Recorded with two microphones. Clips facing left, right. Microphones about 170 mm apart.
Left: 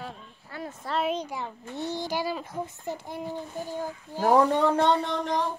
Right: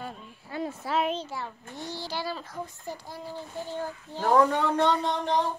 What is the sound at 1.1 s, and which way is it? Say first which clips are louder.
A child's voice: left 2 dB; 15° left (ahead or behind).